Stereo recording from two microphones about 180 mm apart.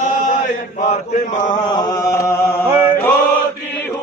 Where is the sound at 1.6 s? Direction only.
25° left (ahead or behind).